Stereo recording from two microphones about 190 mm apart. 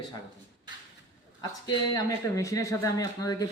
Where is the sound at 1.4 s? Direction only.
20° left (ahead or behind).